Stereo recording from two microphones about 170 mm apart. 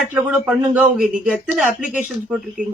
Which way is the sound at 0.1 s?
10° right (ahead or behind).